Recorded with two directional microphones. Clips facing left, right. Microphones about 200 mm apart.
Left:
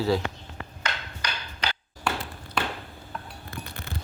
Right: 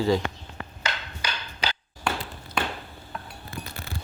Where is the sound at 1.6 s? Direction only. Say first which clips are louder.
Right 1 dB; 5° right (ahead or behind).